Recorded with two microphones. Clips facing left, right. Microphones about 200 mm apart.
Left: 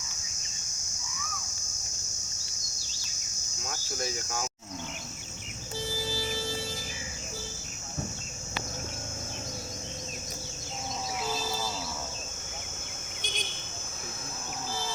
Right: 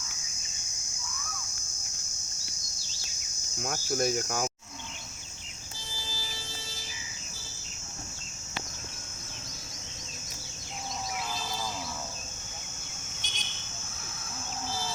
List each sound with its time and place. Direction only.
3.6 s cricket: 55° right (ahead or behind)
6.1 s a sound: 60° left (ahead or behind)
13.2 s vehicle: 50° left (ahead or behind)